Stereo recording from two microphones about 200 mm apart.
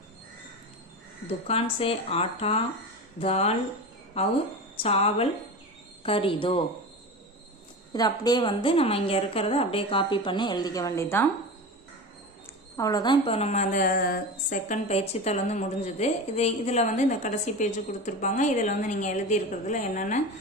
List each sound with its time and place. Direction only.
1.5 s a woman's voice: 30° left (ahead or behind)
7.9 s a woman's voice: 20° left (ahead or behind)
12.7 s a woman's voice: 15° left (ahead or behind); by 20.2 s 40° left (ahead or behind)